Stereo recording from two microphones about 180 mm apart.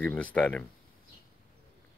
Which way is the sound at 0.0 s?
10° left (ahead or behind).